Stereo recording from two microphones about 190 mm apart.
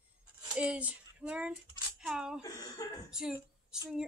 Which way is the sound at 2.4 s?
20° left (ahead or behind).